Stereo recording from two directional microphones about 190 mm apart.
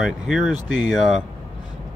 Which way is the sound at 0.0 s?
5° right (ahead or behind).